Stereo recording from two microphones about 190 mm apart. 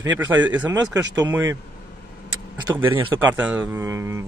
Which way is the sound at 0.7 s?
20° right (ahead or behind).